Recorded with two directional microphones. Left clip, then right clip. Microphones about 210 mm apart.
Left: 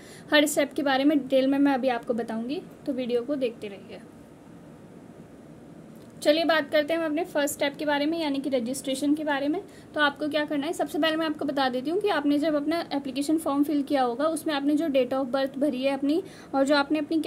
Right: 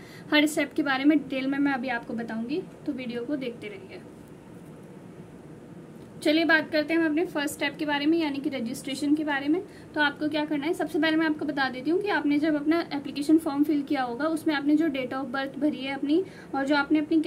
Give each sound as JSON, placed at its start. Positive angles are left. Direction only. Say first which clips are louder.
{"t": 0.3, "sound": "a woman's voice", "louder": "left 2 dB", "side_deg": 45}
{"t": 6.2, "sound": "a woman's voice", "louder": "even", "side_deg": 50}